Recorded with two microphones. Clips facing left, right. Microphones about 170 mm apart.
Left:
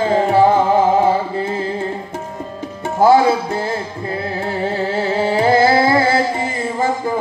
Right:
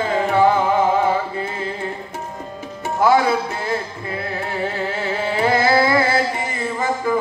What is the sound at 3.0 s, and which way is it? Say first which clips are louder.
Music: left 4 dB; 30° left (ahead or behind).